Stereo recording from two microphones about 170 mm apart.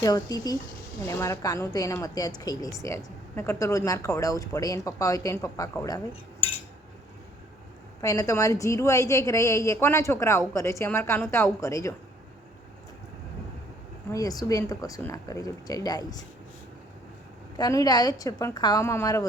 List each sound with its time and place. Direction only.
0.0 s speech: 20° left (ahead or behind)
8.0 s a woman's voice: 20° left (ahead or behind)
14.1 s speech: 20° left (ahead or behind)
17.6 s speech: 20° left (ahead or behind)